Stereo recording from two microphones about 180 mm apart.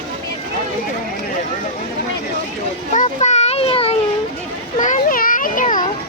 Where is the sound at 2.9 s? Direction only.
40° left (ahead or behind).